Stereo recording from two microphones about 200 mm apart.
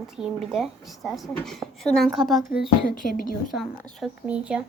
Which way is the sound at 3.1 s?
45° left (ahead or behind).